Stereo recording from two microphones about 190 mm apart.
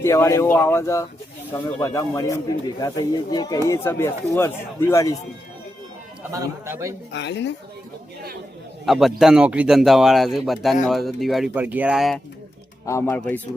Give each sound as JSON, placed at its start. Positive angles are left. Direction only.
{"t": 0.0, "sound": "speech", "side_deg": 15}
{"t": 6.3, "sound": "a man's voice", "side_deg": -15}
{"t": 7.1, "sound": "speech", "side_deg": 65}
{"t": 8.9, "sound": "speech", "side_deg": 0}
{"t": 12.8, "sound": "speech", "side_deg": 15}